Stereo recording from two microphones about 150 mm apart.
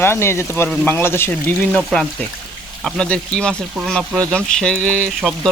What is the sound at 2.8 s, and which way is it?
Speech, 5° left (ahead or behind).